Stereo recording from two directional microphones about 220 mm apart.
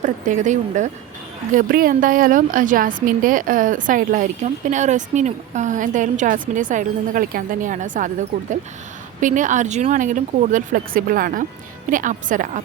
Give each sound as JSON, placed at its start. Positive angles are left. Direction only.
{"t": 0.0, "sound": "a woman's voice", "side_deg": -35}